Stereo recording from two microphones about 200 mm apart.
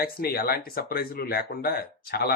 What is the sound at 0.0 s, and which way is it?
Speech, 50° left (ahead or behind).